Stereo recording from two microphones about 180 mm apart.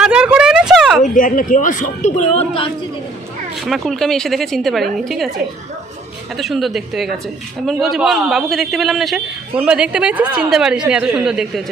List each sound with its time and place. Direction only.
0.0 s a sound: 5° right (ahead or behind)
1.0 s speech: 50° left (ahead or behind)
3.7 s a man's voice: centre (ahead or behind)
6.3 s a man's voice: centre (ahead or behind)